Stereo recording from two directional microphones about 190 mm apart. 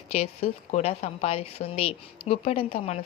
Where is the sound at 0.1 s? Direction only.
35° left (ahead or behind).